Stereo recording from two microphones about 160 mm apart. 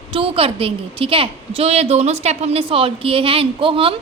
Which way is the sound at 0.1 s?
35° right (ahead or behind).